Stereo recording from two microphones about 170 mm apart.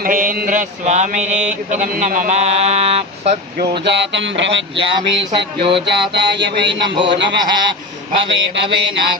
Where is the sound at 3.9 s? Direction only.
90° right.